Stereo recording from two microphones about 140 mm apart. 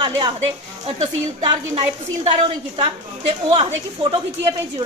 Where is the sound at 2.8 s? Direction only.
45° right (ahead or behind).